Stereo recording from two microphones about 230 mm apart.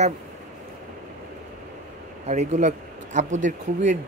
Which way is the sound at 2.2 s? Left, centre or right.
Right.